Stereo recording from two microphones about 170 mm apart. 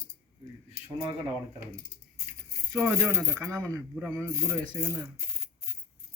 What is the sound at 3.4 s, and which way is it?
Speech, 20° right (ahead or behind).